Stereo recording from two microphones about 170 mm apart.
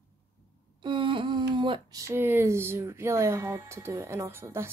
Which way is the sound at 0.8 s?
30° right (ahead or behind).